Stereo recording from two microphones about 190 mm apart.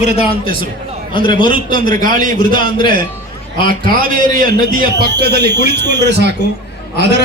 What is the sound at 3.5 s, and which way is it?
Speech, 25° left (ahead or behind).